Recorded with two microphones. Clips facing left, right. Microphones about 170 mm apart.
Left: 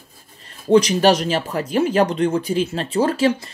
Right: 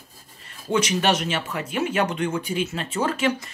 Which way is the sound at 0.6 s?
35° left (ahead or behind).